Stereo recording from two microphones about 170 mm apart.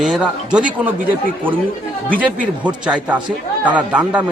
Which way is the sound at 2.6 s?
5° right (ahead or behind).